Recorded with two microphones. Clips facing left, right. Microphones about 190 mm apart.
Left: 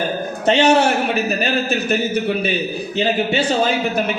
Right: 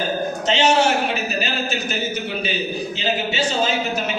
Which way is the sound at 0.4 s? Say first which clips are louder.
Left 4 dB; 60° left (ahead or behind).